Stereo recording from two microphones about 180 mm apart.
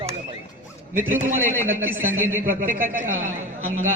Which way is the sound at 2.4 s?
45° right (ahead or behind).